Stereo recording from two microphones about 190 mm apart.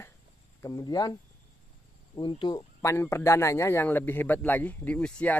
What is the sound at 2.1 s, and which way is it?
Speech, 25° left (ahead or behind).